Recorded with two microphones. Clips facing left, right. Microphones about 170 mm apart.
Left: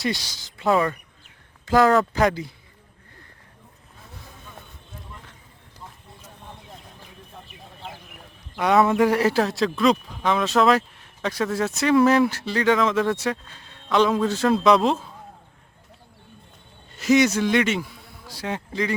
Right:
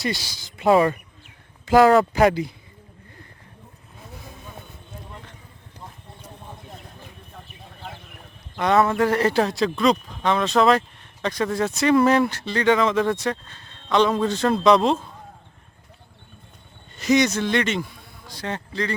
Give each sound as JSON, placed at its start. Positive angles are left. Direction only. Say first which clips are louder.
{"t": 0.0, "sound": "speech", "louder": "left 1 dB", "side_deg": -5}
{"t": 0.7, "sound": "speech", "louder": "right 4 dB", "side_deg": -25}
{"t": 1.6, "sound": "speech", "louder": "right 3 dB", "side_deg": -10}
{"t": 8.5, "sound": "speech", "louder": "left 1 dB", "side_deg": 5}
{"t": 17.0, "sound": "a man's voice", "louder": "left 1 dB", "side_deg": 5}